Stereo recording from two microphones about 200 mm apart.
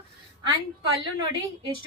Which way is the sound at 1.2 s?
20° right (ahead or behind).